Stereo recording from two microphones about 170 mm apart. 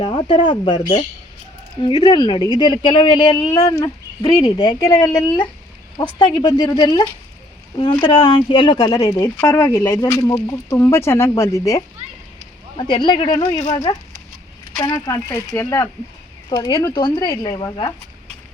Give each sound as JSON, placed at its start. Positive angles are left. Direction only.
{"t": 0.0, "sound": "a woman's voice", "side_deg": 30}
{"t": 1.8, "sound": "a woman's voice", "side_deg": 30}
{"t": 12.7, "sound": "a woman's voice", "side_deg": 30}